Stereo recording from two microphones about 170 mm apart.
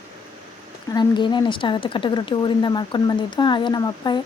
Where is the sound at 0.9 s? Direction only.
25° left (ahead or behind).